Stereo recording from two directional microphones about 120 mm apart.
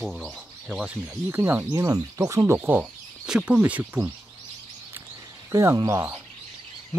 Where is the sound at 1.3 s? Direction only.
20° right (ahead or behind).